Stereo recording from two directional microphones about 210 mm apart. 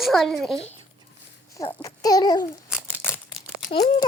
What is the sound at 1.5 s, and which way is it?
Babbling, 15° left (ahead or behind).